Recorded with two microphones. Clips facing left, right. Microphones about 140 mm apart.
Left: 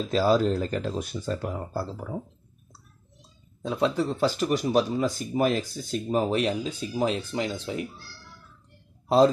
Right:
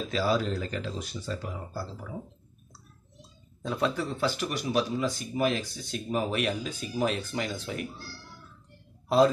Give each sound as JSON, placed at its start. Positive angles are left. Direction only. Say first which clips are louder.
{"t": 0.1, "sound": "speech", "louder": "left 6 dB", "side_deg": 40}
{"t": 3.6, "sound": "speech", "louder": "left 3 dB", "side_deg": 20}
{"t": 4.4, "sound": "speech", "louder": "left 5 dB", "side_deg": 40}
{"t": 6.0, "sound": "speech", "louder": "left 4 dB", "side_deg": 30}